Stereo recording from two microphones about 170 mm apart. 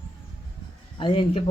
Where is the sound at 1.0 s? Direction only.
30° left (ahead or behind).